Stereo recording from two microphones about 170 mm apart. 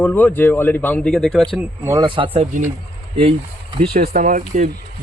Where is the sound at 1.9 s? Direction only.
25° right (ahead or behind).